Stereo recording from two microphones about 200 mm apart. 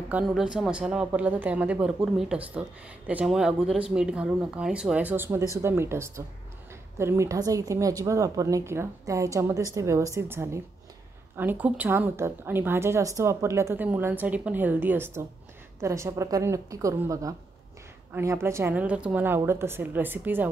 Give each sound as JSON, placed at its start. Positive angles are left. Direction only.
{"t": 0.1, "sound": "a woman's voice", "side_deg": 0}